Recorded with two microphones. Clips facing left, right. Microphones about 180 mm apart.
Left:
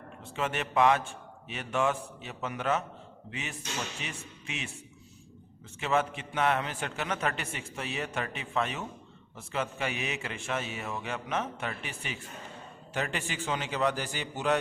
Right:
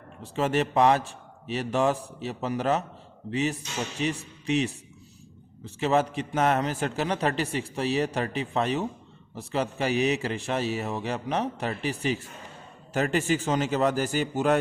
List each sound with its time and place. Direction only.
0.2 s a man's voice: 35° right (ahead or behind)